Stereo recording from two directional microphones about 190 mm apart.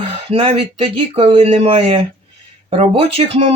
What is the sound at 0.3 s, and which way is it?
Speech, 30° right (ahead or behind).